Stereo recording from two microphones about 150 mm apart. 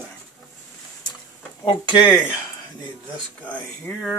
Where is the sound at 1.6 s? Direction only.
30° left (ahead or behind).